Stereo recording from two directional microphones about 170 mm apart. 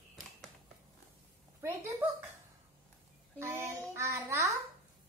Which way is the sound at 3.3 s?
15° right (ahead or behind).